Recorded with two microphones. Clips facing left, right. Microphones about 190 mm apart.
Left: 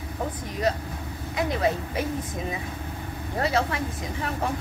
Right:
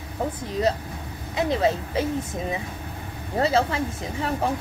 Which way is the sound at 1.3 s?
25° right (ahead or behind).